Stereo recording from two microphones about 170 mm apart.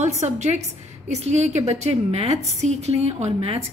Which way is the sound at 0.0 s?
40° right (ahead or behind).